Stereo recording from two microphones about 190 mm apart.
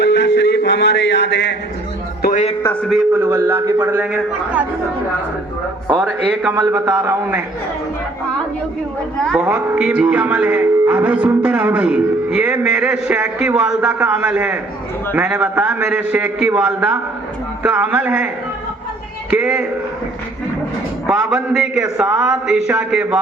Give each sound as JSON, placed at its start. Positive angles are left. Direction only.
{"t": 0.0, "sound": "music", "side_deg": 65}
{"t": 2.2, "sound": "speech", "side_deg": 40}
{"t": 2.6, "sound": "a man's voice", "side_deg": 5}
{"t": 3.1, "sound": "a man's voice", "side_deg": -10}
{"t": 6.6, "sound": "a man's voice", "side_deg": -15}
{"t": 9.1, "sound": "a man's voice", "side_deg": 0}
{"t": 19.3, "sound": "a man's voice", "side_deg": -5}
{"t": 21.1, "sound": "a man's voice", "side_deg": -5}